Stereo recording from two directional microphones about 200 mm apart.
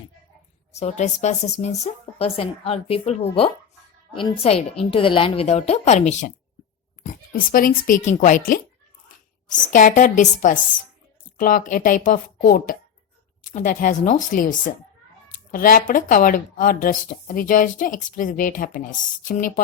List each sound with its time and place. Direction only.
0.7 s a woman's voice: 35° left (ahead or behind)